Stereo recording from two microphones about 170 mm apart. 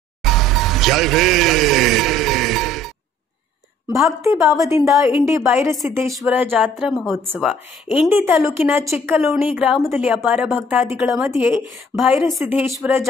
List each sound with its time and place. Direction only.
0.2 s music: centre (ahead or behind)
4.2 s a woman's voice: 20° right (ahead or behind)